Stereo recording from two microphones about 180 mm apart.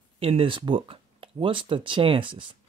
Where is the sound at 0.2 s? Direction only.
30° right (ahead or behind).